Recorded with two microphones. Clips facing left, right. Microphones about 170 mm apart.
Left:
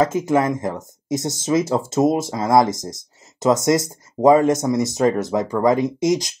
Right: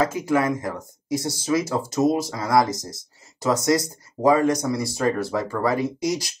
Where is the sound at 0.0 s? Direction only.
20° left (ahead or behind).